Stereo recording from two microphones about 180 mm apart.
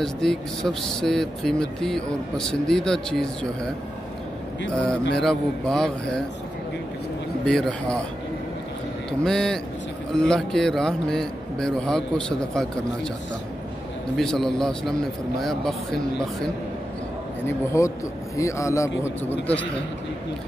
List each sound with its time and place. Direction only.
0.0 s speech: 5° left (ahead or behind)
4.6 s speech: 5° left (ahead or behind)
7.4 s speech: 5° left (ahead or behind)
9.2 s speech: 5° left (ahead or behind)
14.1 s speech: centre (ahead or behind)
17.5 s speech: 15° left (ahead or behind)